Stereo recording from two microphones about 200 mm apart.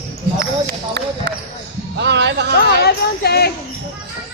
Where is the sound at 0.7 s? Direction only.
55° right (ahead or behind).